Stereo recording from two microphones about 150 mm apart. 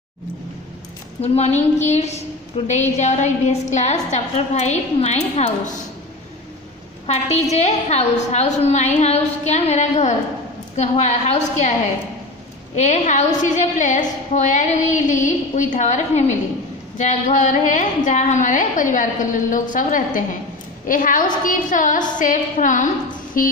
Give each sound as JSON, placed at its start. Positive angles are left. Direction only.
{"t": 1.2, "sound": "a woman's voice", "side_deg": 45}
{"t": 7.5, "sound": "a woman's voice", "side_deg": 50}
{"t": 12.7, "sound": "a woman's voice", "side_deg": 55}
{"t": 23.3, "sound": "a sound", "side_deg": 70}